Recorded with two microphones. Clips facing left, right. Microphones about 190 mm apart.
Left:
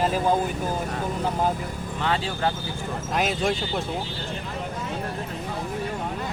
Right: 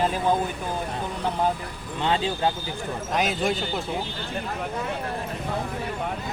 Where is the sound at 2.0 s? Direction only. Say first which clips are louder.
Right 2 dB; 20° right (ahead or behind).